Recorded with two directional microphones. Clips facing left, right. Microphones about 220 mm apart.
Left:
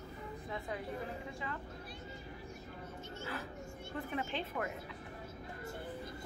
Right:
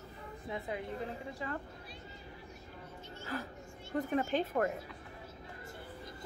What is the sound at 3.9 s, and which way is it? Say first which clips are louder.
Speech: right 7 dB; 45° right (ahead or behind).